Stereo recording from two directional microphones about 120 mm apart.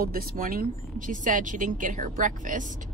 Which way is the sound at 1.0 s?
90° right.